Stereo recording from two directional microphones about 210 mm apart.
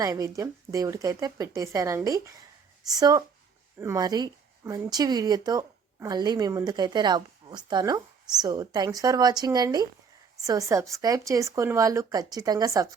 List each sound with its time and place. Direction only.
0.0 s speech: 15° right (ahead or behind)